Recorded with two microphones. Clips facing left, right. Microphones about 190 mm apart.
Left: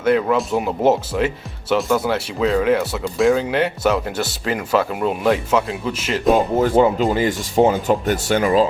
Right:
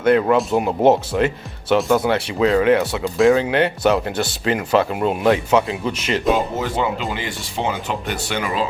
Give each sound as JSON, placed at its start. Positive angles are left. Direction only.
{"t": 0.0, "sound": "speech", "side_deg": 0}
{"t": 6.3, "sound": "speech", "side_deg": 50}